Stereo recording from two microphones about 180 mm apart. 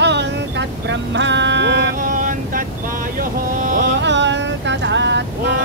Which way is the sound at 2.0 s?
50° right (ahead or behind).